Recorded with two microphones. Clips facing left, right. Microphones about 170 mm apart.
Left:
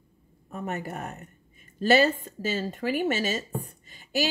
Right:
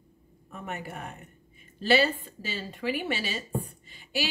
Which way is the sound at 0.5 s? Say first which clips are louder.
Left 5 dB; 40° left (ahead or behind).